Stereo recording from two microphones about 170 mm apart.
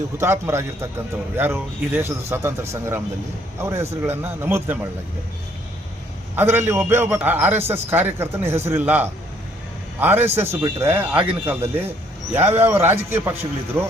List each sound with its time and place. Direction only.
0.2 s a man's voice: 15° right (ahead or behind)
6.3 s a man's voice: 15° right (ahead or behind)